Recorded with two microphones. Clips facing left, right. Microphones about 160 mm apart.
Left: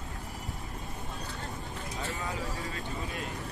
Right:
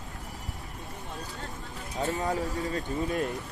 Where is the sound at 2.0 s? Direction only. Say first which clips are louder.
Right 9 dB; 40° right (ahead or behind).